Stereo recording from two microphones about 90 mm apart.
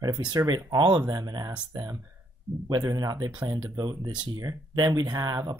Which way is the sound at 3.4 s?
60° right (ahead or behind).